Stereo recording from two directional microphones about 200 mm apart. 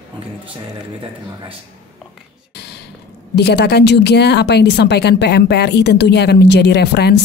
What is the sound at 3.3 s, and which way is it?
A woman's voice, 55° left (ahead or behind).